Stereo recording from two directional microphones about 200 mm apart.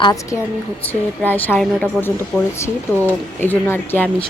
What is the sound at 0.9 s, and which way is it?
Speech, 10° left (ahead or behind).